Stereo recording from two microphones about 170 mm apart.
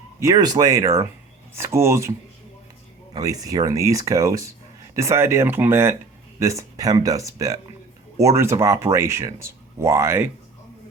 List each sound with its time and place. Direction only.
0.2 s speech: 20° right (ahead or behind)